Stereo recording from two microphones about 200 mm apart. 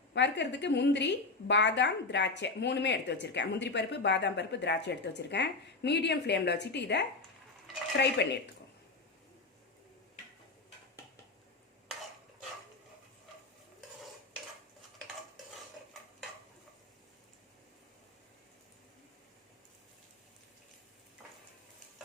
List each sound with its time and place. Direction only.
0.1 s a woman's voice: 60° left (ahead or behind)